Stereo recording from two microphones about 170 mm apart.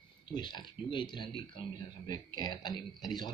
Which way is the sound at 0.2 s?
25° left (ahead or behind).